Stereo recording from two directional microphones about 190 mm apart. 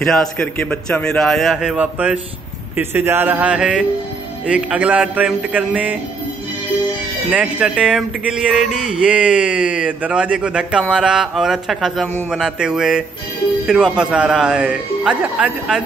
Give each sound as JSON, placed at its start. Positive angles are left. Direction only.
{"t": 0.0, "sound": "a man's voice", "side_deg": 5}
{"t": 7.2, "sound": "a man's voice", "side_deg": -5}